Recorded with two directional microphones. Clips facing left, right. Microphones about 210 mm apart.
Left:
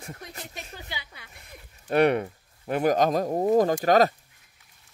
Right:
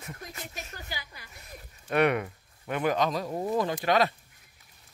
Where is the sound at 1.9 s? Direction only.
35° left (ahead or behind).